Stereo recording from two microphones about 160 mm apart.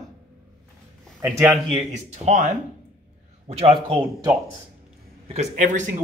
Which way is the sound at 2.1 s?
45° right (ahead or behind).